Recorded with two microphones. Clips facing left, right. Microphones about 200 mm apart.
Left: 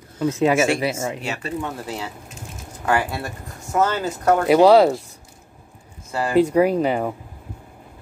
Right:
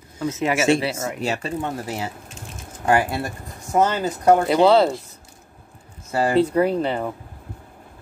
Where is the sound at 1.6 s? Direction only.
25° right (ahead or behind).